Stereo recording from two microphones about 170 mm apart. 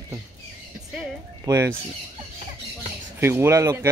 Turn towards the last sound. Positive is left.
turn(degrees=-15)  # may be behind; listen again after turning